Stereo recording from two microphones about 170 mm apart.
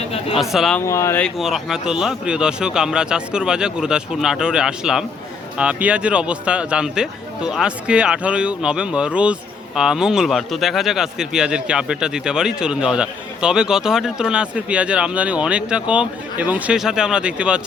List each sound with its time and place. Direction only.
0.3 s speech: centre (ahead or behind)
0.9 s speech: 15° left (ahead or behind)
1.2 s speech: centre (ahead or behind)